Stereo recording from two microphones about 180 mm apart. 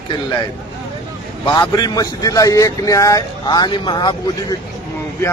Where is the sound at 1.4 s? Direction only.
25° left (ahead or behind).